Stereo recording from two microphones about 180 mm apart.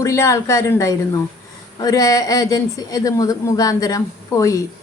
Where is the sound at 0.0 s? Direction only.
15° left (ahead or behind).